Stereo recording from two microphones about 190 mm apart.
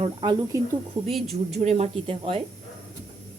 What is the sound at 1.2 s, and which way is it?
Speech, 35° right (ahead or behind).